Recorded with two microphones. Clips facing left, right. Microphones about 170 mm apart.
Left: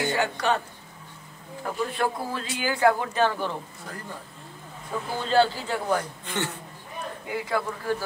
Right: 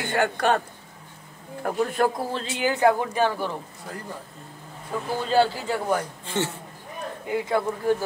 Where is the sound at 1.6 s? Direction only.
50° right (ahead or behind).